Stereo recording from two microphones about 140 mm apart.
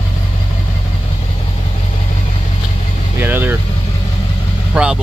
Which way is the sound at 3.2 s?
15° right (ahead or behind).